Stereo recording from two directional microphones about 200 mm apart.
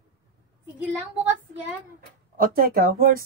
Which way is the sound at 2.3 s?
45° right (ahead or behind).